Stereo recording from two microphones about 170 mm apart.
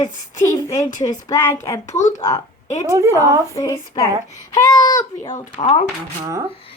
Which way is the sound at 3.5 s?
20° left (ahead or behind).